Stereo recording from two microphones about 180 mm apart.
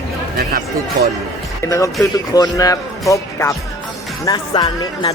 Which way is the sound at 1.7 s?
20° left (ahead or behind).